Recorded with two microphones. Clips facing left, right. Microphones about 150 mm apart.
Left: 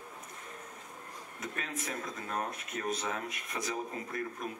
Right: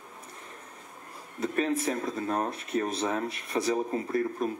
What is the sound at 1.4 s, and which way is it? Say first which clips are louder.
Speech: right 13 dB; 30° right (ahead or behind).